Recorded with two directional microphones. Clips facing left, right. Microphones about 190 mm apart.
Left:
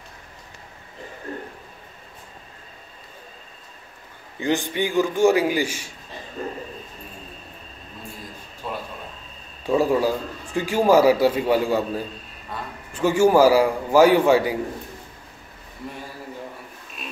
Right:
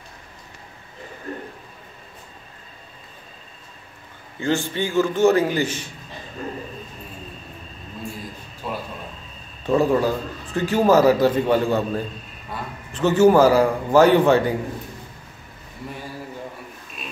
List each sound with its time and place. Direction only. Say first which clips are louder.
4.4 s a man's voice: even; 15° left (ahead or behind)
8.6 s a sound: right 1 dB; 5° right (ahead or behind)
9.7 s a man's voice: right 1 dB; 10° left (ahead or behind)